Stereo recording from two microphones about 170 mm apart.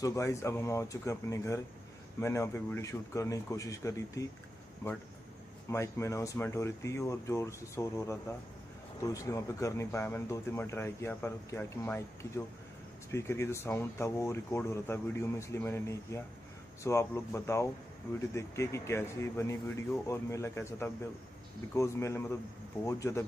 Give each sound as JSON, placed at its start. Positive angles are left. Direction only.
{"t": 0.0, "sound": "speech", "side_deg": 15}
{"t": 5.7, "sound": "speech", "side_deg": 15}